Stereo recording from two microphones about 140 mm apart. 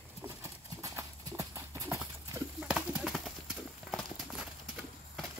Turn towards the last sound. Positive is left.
turn(degrees=0)  # may be behind; listen again after turning